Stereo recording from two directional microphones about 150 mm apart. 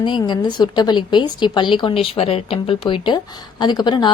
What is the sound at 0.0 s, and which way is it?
A woman's voice, 30° left (ahead or behind).